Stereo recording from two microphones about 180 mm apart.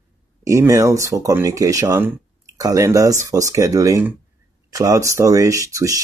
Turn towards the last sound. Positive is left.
turn(degrees=-20)  # may be behind; listen again after turning